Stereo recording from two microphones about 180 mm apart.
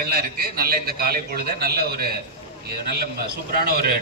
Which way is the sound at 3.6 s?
60° right (ahead or behind).